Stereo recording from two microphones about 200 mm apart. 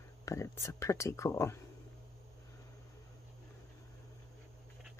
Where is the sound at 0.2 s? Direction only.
15° left (ahead or behind).